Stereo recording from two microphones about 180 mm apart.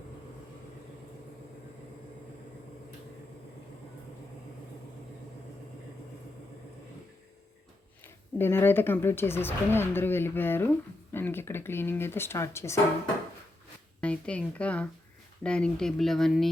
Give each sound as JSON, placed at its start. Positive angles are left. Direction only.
{"t": 8.0, "sound": "speech", "side_deg": 10}
{"t": 14.0, "sound": "speech", "side_deg": 5}